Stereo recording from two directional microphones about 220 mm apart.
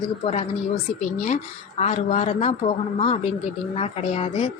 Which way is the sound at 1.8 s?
30° left (ahead or behind).